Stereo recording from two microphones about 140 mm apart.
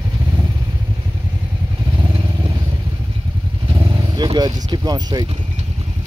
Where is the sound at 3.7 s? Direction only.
30° right (ahead or behind).